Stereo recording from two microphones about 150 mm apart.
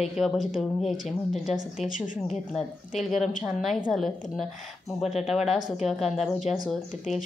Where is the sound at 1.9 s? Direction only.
60° left (ahead or behind).